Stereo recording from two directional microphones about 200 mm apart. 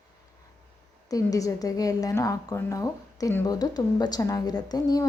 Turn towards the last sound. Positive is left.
turn(degrees=20)  # may be behind; listen again after turning